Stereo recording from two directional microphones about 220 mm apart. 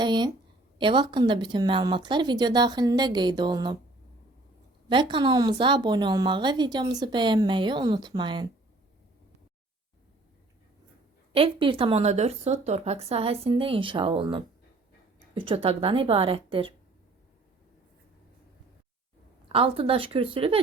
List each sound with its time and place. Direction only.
0.0 s a woman's voice: 20° right (ahead or behind)
4.9 s a woman's voice: 20° right (ahead or behind)
11.3 s a woman's voice: 25° right (ahead or behind)
19.5 s a woman's voice: 25° right (ahead or behind)